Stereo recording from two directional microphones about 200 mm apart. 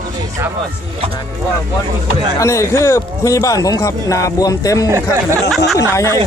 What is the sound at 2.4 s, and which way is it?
Speech, 15° left (ahead or behind).